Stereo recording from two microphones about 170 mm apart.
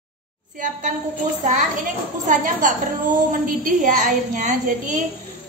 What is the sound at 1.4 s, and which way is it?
A woman's voice, 50° right (ahead or behind).